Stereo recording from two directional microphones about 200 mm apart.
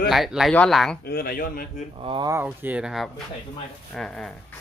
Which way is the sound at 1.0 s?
50° left (ahead or behind).